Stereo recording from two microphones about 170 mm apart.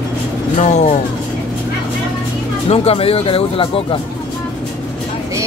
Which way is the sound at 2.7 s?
35° left (ahead or behind).